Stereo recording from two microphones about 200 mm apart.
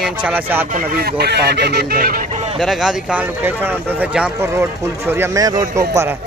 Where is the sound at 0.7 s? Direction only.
50° right (ahead or behind).